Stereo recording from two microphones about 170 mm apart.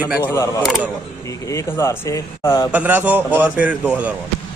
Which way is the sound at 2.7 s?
10° right (ahead or behind).